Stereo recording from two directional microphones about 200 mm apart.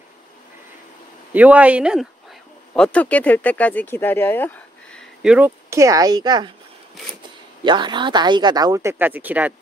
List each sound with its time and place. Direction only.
1.3 s speech: 5° right (ahead or behind)
2.7 s speech: 5° left (ahead or behind)
5.2 s speech: 5° right (ahead or behind)
7.6 s speech: 25° right (ahead or behind)